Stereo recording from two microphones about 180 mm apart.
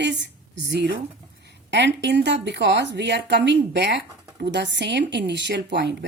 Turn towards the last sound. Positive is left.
turn(degrees=-70)  # may be behind; listen again after turning